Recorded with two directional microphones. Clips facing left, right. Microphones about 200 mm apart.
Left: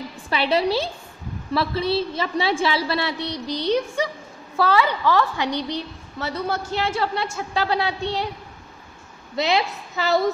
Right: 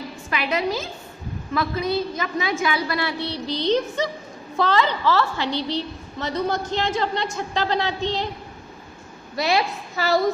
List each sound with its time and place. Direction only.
0.3 s a woman's voice: 30° left (ahead or behind); by 8.3 s 10° left (ahead or behind)
9.3 s a woman's voice: 20° left (ahead or behind)